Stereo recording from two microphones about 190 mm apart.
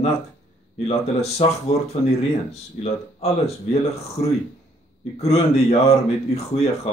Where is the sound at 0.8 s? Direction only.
35° left (ahead or behind).